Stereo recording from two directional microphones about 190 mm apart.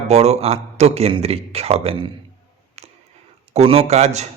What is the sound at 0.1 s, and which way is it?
A man's voice, 35° right (ahead or behind).